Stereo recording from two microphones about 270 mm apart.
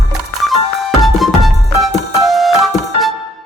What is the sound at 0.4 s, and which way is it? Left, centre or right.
Music, centre.